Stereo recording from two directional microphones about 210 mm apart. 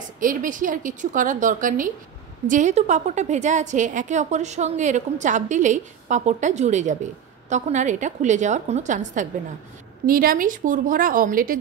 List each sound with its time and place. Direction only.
0.2 s a woman's voice: 40° right (ahead or behind)